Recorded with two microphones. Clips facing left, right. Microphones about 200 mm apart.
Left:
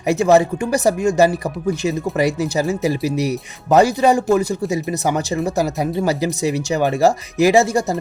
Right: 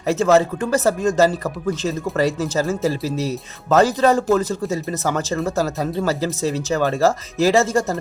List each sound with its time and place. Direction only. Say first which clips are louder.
0.1 s speech: left 2 dB; 15° left (ahead or behind)